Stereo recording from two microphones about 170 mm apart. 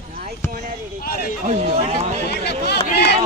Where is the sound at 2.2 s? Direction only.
75° left (ahead or behind).